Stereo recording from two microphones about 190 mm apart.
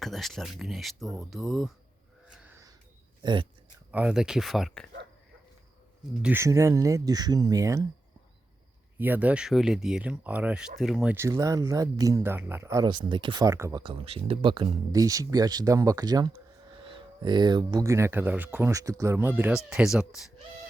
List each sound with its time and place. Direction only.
0.0 s speech: centre (ahead or behind)
2.2 s a sound: 5° right (ahead or behind)
3.9 s speech: 5° right (ahead or behind)
6.2 s speech: 15° right (ahead or behind)
9.0 s speech: 10° right (ahead or behind)